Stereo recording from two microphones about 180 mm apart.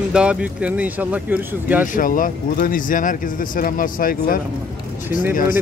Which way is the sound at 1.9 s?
50° left (ahead or behind).